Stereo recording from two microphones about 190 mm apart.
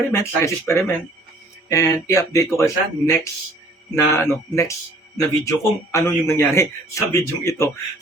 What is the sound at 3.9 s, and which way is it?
A man's voice, 15° left (ahead or behind).